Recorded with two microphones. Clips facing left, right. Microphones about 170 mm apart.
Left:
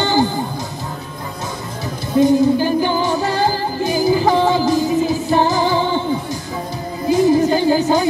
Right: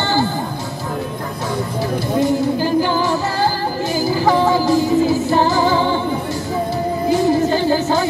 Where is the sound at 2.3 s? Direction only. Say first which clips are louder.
Left 3 dB; 15° left (ahead or behind).